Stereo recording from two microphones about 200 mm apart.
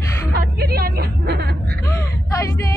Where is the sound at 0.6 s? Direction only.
50° right (ahead or behind).